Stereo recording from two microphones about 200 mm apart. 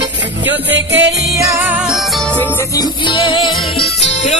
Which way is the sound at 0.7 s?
65° right (ahead or behind).